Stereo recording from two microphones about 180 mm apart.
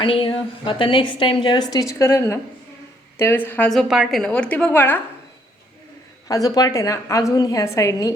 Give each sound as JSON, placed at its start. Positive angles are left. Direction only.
{"t": 0.0, "sound": "a woman's voice", "side_deg": 25}
{"t": 6.2, "sound": "a woman's voice", "side_deg": 20}